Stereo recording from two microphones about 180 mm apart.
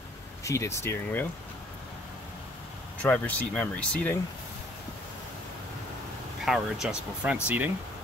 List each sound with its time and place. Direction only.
0.4 s speech: 15° left (ahead or behind)
3.0 s speech: 10° left (ahead or behind)
6.4 s speech: centre (ahead or behind)